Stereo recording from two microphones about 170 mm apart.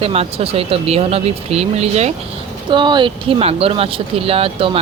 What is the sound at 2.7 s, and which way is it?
Speech, 25° right (ahead or behind).